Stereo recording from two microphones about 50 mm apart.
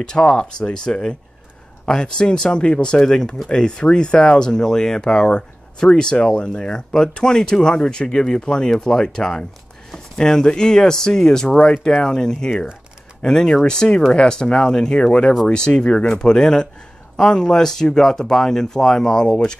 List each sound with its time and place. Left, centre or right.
0.0 s speech: centre